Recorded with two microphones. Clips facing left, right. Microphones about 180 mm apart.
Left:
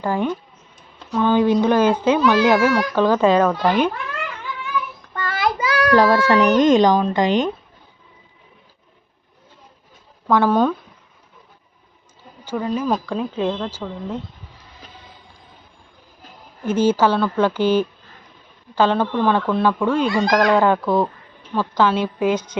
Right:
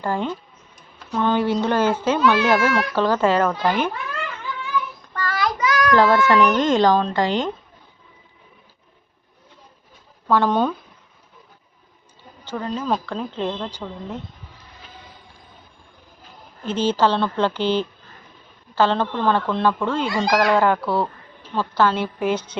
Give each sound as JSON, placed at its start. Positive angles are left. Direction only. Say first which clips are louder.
{"t": 0.0, "sound": "a child's voice", "louder": "left 3 dB", "side_deg": 15}
{"t": 5.1, "sound": "child singing", "louder": "left 2 dB", "side_deg": 25}
{"t": 6.0, "sound": "a child's voice", "louder": "even", "side_deg": 15}
{"t": 10.2, "sound": "a child's voice", "louder": "left 2 dB", "side_deg": 15}
{"t": 12.5, "sound": "a child's voice", "louder": "left 3 dB", "side_deg": 10}
{"t": 16.6, "sound": "a child's voice", "louder": "left 3 dB", "side_deg": 10}